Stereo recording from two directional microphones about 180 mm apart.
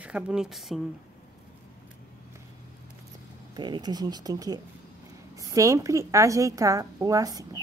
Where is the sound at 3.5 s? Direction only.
25° right (ahead or behind).